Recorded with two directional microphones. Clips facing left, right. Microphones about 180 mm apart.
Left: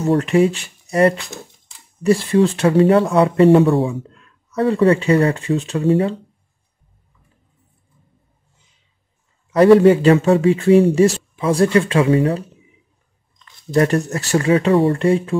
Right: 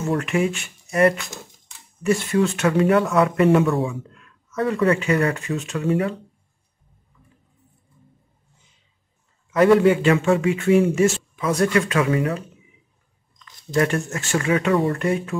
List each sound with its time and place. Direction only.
0.0 s speech: 35° left (ahead or behind)
9.5 s speech: 35° left (ahead or behind)
13.7 s speech: 35° left (ahead or behind)